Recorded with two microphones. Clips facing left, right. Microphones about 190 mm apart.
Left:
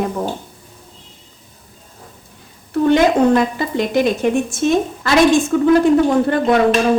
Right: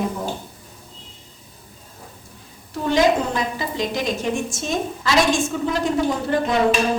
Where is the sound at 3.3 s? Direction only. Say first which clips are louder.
Left 9 dB; 60° left (ahead or behind).